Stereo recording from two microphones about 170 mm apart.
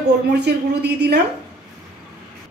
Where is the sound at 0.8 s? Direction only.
75° right (ahead or behind).